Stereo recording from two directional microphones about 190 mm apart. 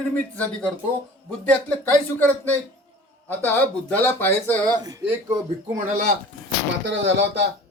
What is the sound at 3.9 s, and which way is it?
Speech, 10° left (ahead or behind).